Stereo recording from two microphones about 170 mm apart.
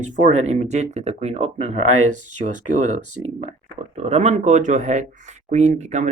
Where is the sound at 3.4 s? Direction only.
40° right (ahead or behind).